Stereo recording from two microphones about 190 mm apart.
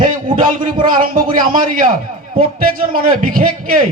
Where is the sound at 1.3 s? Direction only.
45° right (ahead or behind).